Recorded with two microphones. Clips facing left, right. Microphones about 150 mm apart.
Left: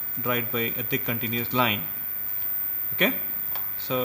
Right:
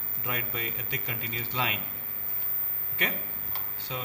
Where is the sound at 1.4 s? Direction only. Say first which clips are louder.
Left 8 dB; 90° left.